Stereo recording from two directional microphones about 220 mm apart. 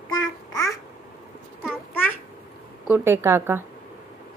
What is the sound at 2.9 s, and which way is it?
Speech, 10° right (ahead or behind).